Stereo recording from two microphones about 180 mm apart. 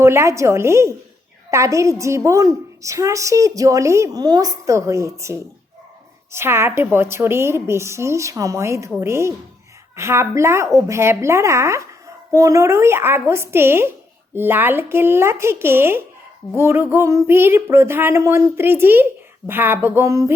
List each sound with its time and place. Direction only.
0.0 s a woman's voice: 15° right (ahead or behind)